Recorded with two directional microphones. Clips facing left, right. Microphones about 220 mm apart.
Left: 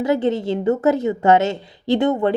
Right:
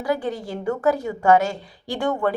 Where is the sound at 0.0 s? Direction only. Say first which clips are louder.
Left 6 dB; 25° left (ahead or behind).